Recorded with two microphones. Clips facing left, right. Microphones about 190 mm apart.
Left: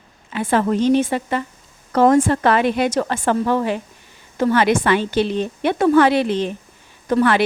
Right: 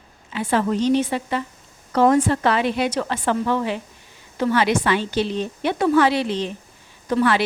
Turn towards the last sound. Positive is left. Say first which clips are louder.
# left 3 dB
turn(degrees=55)  # may be behind; listen again after turning